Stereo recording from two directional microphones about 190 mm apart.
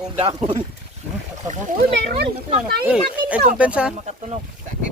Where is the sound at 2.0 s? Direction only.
60° right (ahead or behind).